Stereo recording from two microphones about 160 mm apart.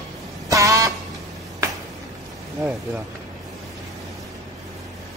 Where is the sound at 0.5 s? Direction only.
20° right (ahead or behind).